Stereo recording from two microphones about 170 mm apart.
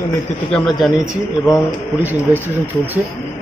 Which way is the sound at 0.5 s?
Centre (ahead or behind).